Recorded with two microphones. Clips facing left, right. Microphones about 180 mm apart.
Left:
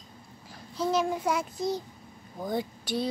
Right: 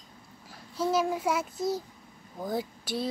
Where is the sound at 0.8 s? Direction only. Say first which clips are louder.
Even; 5° right (ahead or behind).